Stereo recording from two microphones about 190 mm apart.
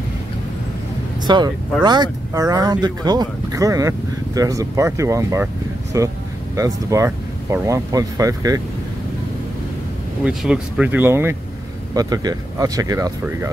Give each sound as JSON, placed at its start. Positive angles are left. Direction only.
{"t": 1.2, "sound": "speech", "side_deg": -20}
{"t": 10.2, "sound": "speech", "side_deg": -5}